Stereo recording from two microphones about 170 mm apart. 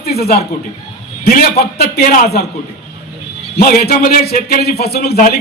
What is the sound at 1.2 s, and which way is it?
A man's voice, 65° left (ahead or behind).